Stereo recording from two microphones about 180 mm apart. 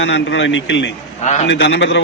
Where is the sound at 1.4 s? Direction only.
80° left.